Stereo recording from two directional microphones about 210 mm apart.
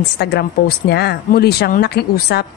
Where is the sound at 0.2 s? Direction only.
50° left (ahead or behind).